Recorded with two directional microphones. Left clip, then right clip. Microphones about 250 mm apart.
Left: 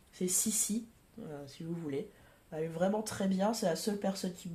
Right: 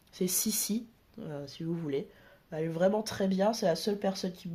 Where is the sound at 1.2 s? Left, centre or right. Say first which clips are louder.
Right 5 dB; right.